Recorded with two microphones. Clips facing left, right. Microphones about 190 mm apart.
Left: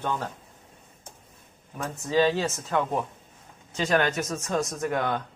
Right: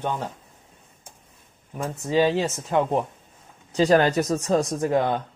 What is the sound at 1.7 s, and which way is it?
Speech, 15° right (ahead or behind).